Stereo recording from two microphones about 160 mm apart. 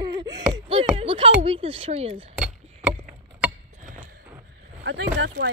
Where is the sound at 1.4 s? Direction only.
35° right (ahead or behind).